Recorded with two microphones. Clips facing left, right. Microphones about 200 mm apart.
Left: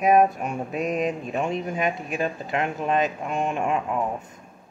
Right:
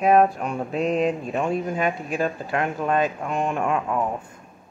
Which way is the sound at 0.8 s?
30° right (ahead or behind).